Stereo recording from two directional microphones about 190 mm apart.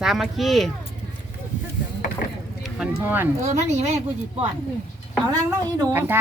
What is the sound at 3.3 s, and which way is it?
Speech, 35° right (ahead or behind).